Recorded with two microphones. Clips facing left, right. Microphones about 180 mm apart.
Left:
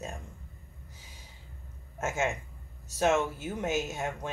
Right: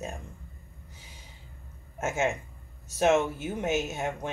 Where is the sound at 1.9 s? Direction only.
20° right (ahead or behind).